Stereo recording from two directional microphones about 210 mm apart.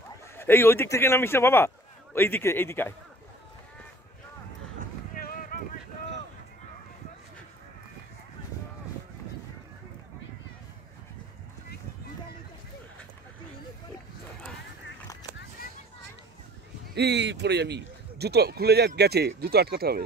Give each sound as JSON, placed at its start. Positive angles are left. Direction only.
{"t": 0.4, "sound": "a man's voice", "side_deg": 10}
{"t": 5.1, "sound": "a sound", "side_deg": 40}
{"t": 16.9, "sound": "a man's voice", "side_deg": -55}